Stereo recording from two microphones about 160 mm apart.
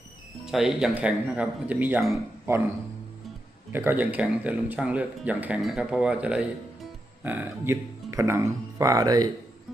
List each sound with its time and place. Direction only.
0.4 s speech: centre (ahead or behind)
3.7 s speech: 10° right (ahead or behind)